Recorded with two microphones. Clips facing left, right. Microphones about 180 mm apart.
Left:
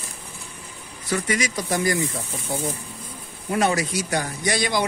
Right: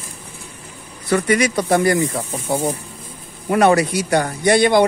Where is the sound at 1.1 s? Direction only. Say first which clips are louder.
Right 8 dB; 60° right (ahead or behind).